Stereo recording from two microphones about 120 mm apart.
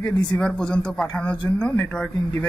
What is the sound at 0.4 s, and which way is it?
Speech, 5° left (ahead or behind).